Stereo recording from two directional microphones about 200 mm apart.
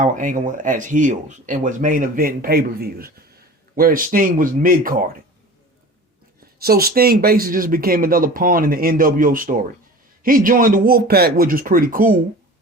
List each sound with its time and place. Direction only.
0.0 s speech: 40° right (ahead or behind)
6.6 s speech: 50° right (ahead or behind)